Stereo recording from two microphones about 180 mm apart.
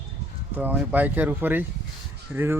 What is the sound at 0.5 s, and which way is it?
Speech, 10° right (ahead or behind).